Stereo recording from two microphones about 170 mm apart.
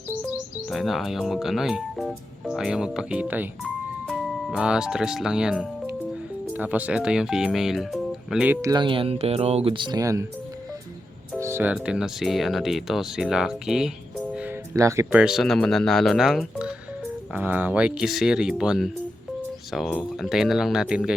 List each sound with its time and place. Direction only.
0.7 s speech: centre (ahead or behind)
3.6 s music: centre (ahead or behind)
6.5 s speech: 10° right (ahead or behind)
8.6 s speech: 25° right (ahead or behind)
11.3 s speech: 15° right (ahead or behind)
14.3 s music: 10° right (ahead or behind)
15.2 s speech: centre (ahead or behind)
20.0 s speech: centre (ahead or behind)